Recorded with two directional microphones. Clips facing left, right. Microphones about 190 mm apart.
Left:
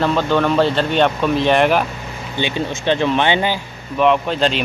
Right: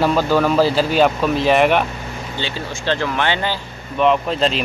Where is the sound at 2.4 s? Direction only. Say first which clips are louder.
Left 6 dB; 20° left (ahead or behind).